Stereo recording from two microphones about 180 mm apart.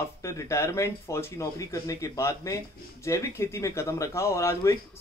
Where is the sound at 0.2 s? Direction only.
15° left (ahead or behind).